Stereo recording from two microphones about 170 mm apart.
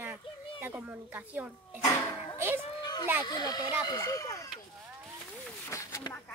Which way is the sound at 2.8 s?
25° left (ahead or behind).